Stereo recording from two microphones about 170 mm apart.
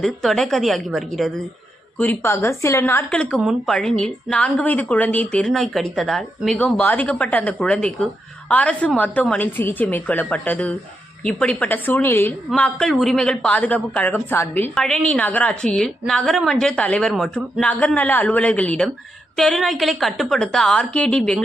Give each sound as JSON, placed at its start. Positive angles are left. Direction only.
{"t": 0.0, "sound": "a woman's voice", "side_deg": 0}
{"t": 2.0, "sound": "a man's voice", "side_deg": 10}
{"t": 3.1, "sound": "a woman's voice", "side_deg": 5}